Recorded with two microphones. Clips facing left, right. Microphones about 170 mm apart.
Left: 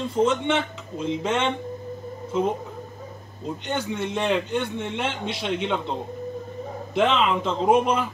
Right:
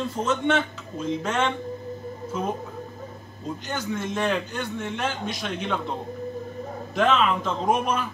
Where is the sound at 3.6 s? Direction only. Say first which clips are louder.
Left 2 dB; 25° left (ahead or behind).